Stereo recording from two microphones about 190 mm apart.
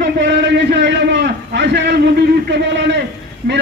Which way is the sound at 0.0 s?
65° right (ahead or behind).